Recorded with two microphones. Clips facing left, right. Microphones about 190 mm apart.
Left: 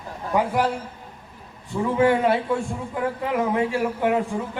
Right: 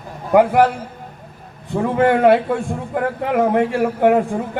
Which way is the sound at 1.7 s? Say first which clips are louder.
Right 4 dB; 60° right (ahead or behind).